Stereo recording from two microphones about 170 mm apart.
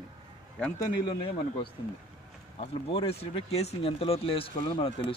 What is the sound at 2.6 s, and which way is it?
Speech, 35° left (ahead or behind).